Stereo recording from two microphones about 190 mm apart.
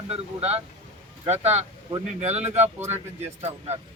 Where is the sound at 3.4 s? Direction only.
35° right (ahead or behind).